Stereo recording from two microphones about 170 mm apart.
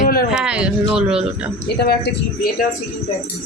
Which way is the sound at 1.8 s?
65° left (ahead or behind).